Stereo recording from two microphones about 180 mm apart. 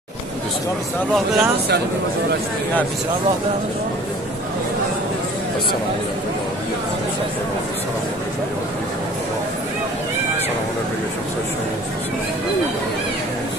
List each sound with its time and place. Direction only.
1.1 s speech: centre (ahead or behind)